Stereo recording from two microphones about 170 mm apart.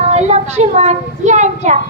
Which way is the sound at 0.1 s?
40° right (ahead or behind).